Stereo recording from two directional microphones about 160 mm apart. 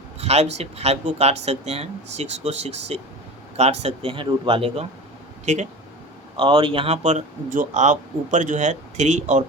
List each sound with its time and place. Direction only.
0.2 s speech: 40° right (ahead or behind)
5.5 s speech: 50° right (ahead or behind)
6.3 s speech: 35° right (ahead or behind); by 9.4 s 50° right (ahead or behind)